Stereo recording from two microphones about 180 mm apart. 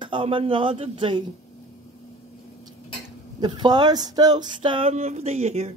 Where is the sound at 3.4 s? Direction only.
25° right (ahead or behind).